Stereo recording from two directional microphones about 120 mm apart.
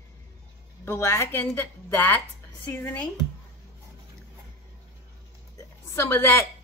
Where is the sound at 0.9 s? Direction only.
20° left (ahead or behind).